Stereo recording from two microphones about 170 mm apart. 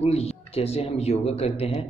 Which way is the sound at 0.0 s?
35° left (ahead or behind).